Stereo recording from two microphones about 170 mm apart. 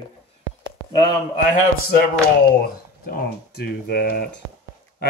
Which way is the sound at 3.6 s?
65° left (ahead or behind).